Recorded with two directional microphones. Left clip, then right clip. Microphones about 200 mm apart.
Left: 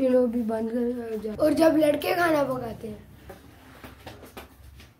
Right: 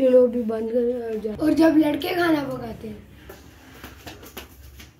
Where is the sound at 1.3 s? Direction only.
20° left (ahead or behind).